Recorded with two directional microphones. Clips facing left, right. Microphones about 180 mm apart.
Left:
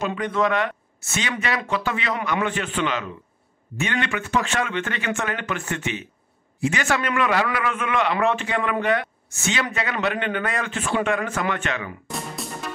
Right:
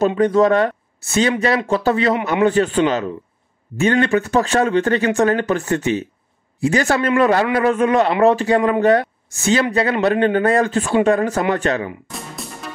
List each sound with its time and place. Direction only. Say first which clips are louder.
0.0 s speech: right 9 dB; 40° right (ahead or behind)
12.4 s music: even; centre (ahead or behind)